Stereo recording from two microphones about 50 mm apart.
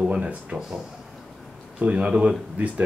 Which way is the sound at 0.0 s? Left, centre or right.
Right.